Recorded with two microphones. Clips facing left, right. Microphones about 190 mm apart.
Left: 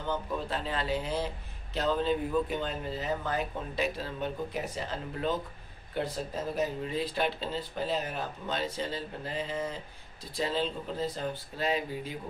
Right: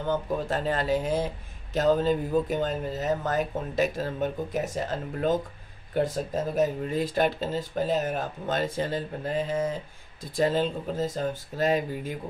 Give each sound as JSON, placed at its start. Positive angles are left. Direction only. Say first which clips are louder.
{"t": 0.0, "sound": "speech", "louder": "right 5 dB", "side_deg": -45}